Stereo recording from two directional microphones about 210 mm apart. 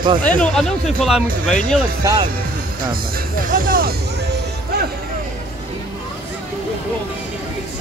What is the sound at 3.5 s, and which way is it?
Speech, 40° right (ahead or behind).